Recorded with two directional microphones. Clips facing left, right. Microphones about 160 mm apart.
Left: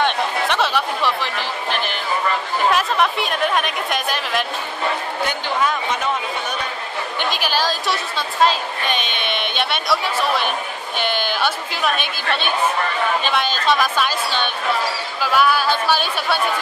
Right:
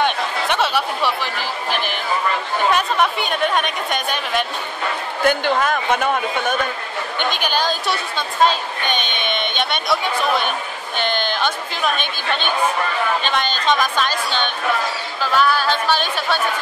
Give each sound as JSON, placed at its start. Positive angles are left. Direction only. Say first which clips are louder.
{"t": 0.0, "sound": "chatter", "louder": "left 1 dB", "side_deg": 0}
{"t": 5.2, "sound": "chatter", "louder": "right 5 dB", "side_deg": -55}
{"t": 7.2, "sound": "chatter", "louder": "right 1 dB", "side_deg": 5}
{"t": 13.2, "sound": "a woman's voice", "louder": "left 1 dB", "side_deg": 5}